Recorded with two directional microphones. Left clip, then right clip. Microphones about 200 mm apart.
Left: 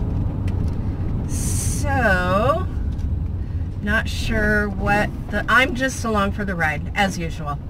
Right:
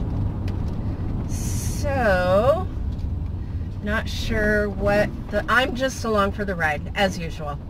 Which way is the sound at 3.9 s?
20° left (ahead or behind).